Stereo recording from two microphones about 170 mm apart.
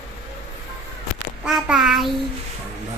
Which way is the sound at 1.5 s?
Centre (ahead or behind).